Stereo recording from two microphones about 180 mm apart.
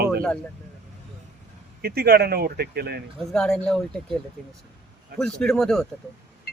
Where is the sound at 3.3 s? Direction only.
Centre (ahead or behind).